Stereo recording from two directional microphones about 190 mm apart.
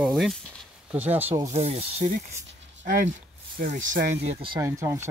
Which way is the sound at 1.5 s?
30° right (ahead or behind).